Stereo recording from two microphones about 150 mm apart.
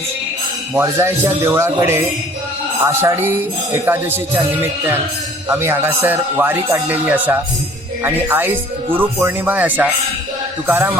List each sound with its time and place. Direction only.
0.7 s speech: 15° right (ahead or behind)
5.5 s speech: 15° right (ahead or behind)